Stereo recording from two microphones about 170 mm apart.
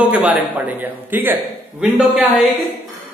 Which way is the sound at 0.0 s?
10° right (ahead or behind).